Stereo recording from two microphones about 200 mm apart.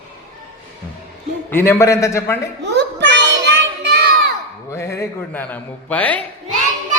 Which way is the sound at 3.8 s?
55° right (ahead or behind).